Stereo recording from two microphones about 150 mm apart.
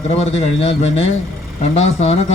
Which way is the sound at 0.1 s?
45° left (ahead or behind).